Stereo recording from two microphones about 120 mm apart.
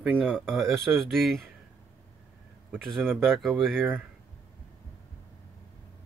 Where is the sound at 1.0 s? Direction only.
5° left (ahead or behind).